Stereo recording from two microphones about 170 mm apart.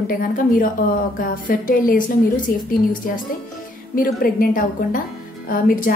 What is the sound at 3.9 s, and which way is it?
A woman's voice, 55° left (ahead or behind).